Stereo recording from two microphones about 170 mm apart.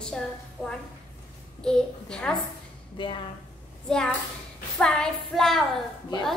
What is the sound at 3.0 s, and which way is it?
Speech, 30° left (ahead or behind).